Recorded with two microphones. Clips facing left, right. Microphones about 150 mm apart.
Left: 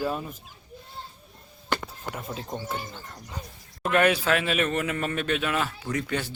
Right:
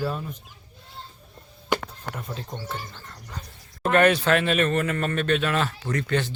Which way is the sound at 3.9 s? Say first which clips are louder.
Right 3 dB; 5° left (ahead or behind).